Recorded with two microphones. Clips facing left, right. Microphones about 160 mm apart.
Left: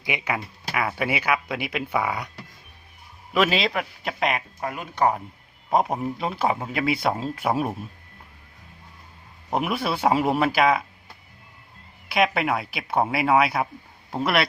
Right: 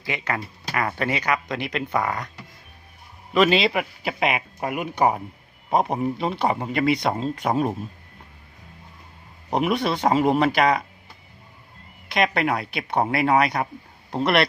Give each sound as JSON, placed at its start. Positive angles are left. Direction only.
{"t": 0.0, "sound": "speech", "side_deg": 10}
{"t": 3.3, "sound": "speech", "side_deg": 0}
{"t": 4.6, "sound": "speech", "side_deg": -15}
{"t": 5.7, "sound": "speech", "side_deg": 0}
{"t": 9.5, "sound": "speech", "side_deg": 5}
{"t": 12.0, "sound": "speech", "side_deg": 5}